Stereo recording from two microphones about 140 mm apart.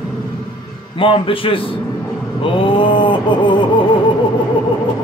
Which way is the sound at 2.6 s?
35° left (ahead or behind).